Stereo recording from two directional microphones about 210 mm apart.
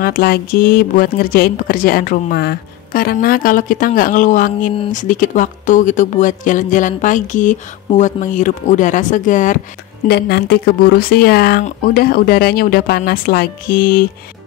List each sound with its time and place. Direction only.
0.0 s speech: 45° left (ahead or behind)
10.0 s speech: 50° left (ahead or behind)